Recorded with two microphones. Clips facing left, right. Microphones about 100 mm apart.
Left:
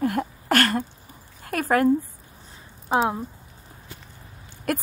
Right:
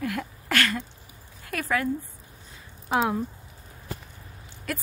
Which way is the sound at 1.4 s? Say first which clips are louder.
Left 6 dB; 45° left (ahead or behind).